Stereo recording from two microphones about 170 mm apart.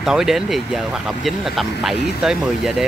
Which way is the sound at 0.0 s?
5° right (ahead or behind).